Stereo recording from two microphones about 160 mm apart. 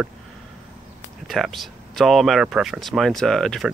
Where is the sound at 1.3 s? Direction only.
Centre (ahead or behind).